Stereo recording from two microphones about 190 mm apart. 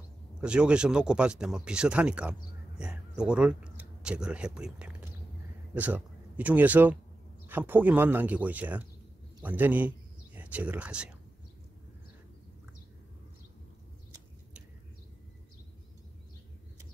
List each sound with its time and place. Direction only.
0.4 s a man's voice: 5° right (ahead or behind)